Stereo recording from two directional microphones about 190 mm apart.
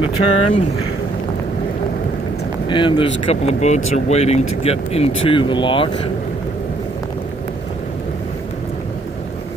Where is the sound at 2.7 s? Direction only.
25° left (ahead or behind).